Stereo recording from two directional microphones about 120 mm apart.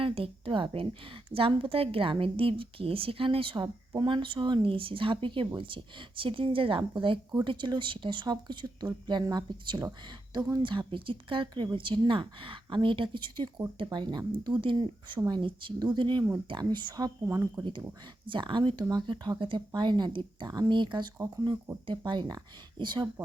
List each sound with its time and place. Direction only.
0.0 s a woman's voice: 50° right (ahead or behind); by 17.5 s 25° right (ahead or behind)
17.6 s speech: 40° right (ahead or behind)